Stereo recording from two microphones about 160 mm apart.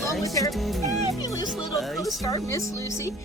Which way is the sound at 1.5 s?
Centre (ahead or behind).